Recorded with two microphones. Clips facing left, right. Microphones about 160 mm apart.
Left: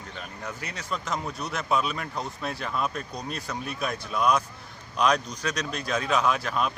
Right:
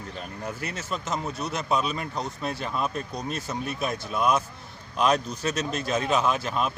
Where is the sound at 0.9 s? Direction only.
5° right (ahead or behind).